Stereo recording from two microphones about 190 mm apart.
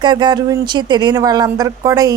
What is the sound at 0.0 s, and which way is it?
Speech, 25° right (ahead or behind).